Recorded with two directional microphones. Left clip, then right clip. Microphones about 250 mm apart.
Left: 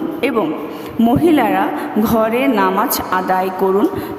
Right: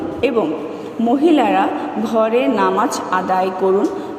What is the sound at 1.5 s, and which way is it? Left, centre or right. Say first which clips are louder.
A woman's voice: even; left.